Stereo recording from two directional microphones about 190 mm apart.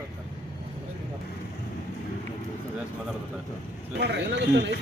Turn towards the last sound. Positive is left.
turn(degrees=-70)  # may be behind; listen again after turning